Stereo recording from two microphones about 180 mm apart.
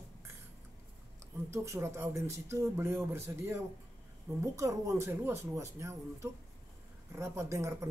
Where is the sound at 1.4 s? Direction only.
15° right (ahead or behind).